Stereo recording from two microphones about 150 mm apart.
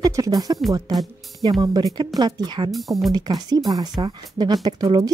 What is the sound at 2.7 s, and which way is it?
Speech, centre (ahead or behind).